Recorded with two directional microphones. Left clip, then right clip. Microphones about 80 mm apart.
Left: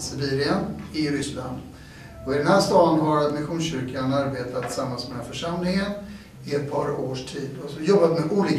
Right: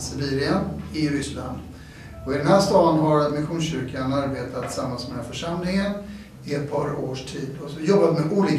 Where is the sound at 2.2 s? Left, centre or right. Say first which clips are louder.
Right 1 dB; centre.